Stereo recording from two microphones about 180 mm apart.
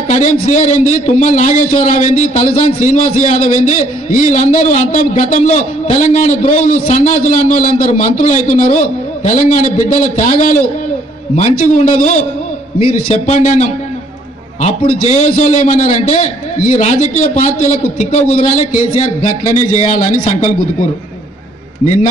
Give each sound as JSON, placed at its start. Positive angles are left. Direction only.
{"t": 0.1, "sound": "a man's voice", "side_deg": 40}